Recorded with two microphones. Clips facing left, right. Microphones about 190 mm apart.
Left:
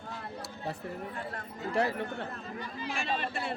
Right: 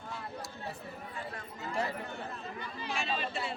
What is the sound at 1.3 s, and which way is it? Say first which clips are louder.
Speech: left 6 dB; 60° left (ahead or behind).